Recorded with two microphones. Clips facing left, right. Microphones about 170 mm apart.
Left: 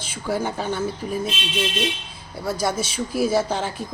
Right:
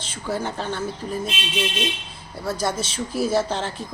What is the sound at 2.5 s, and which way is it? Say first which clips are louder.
A woman's voice: left 1 dB; 10° left (ahead or behind).